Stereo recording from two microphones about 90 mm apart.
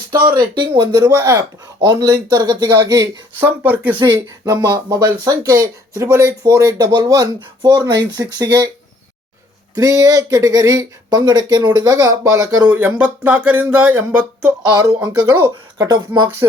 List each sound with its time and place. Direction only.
0.3 s speech: 60° right (ahead or behind)
0.9 s speech: 40° right (ahead or behind)
3.4 s speech: 20° right (ahead or behind)
3.9 s speech: 65° right (ahead or behind)
4.4 s speech: 40° right (ahead or behind)
5.9 s speech: 30° right (ahead or behind)
9.7 s speech: 45° right (ahead or behind)
12.6 s speech: 15° right (ahead or behind)
14.6 s speech: 50° right (ahead or behind)